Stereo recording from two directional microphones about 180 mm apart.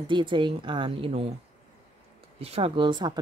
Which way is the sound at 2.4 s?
35° right (ahead or behind).